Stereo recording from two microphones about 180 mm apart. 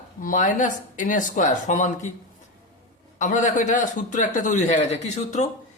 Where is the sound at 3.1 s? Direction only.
45° left (ahead or behind).